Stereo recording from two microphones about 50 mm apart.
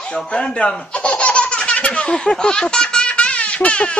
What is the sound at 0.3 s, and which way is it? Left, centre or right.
Speech, left.